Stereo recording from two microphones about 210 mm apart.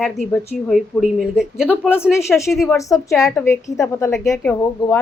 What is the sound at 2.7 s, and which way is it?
A woman's voice, 15° left (ahead or behind).